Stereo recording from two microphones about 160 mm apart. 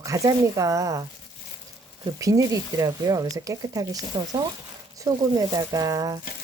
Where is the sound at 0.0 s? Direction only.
20° right (ahead or behind).